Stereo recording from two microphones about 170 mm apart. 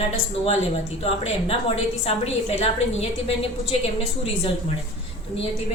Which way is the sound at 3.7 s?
35° left (ahead or behind).